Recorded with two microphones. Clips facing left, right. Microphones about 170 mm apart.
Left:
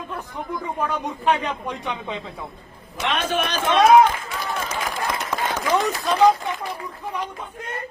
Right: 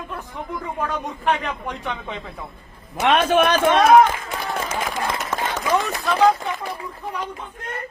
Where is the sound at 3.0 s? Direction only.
55° right (ahead or behind).